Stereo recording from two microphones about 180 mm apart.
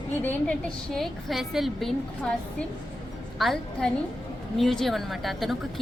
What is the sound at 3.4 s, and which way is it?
A woman's voice, centre (ahead or behind).